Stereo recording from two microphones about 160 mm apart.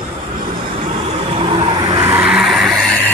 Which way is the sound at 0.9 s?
35° right (ahead or behind).